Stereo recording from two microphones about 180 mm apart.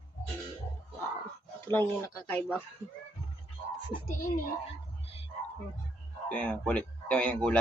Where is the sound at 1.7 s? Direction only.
15° left (ahead or behind).